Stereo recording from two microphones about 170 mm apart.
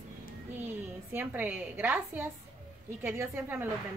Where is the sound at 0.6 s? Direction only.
10° right (ahead or behind).